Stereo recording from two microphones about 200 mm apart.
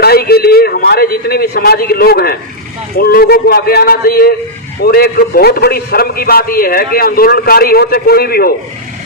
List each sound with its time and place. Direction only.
0.0 s a man's voice: 50° left (ahead or behind)